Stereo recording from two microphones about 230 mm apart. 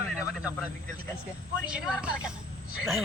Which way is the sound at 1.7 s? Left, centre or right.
Centre.